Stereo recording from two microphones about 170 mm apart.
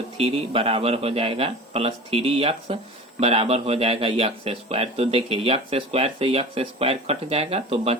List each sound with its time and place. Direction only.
0.2 s speech: 35° right (ahead or behind)